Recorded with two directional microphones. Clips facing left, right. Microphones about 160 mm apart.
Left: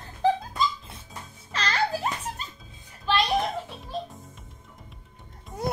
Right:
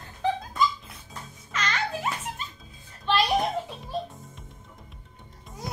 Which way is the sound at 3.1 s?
Centre (ahead or behind).